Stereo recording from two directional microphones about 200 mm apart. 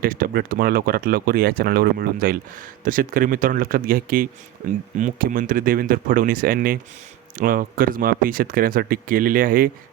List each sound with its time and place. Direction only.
0.0 s speech: 45° right (ahead or behind)